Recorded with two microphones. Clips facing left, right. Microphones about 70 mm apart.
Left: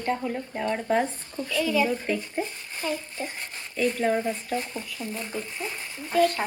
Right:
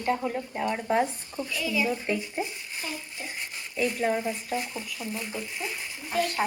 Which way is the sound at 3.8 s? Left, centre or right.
Centre.